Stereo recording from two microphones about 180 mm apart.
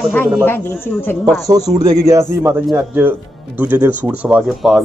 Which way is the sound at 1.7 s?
20° right (ahead or behind).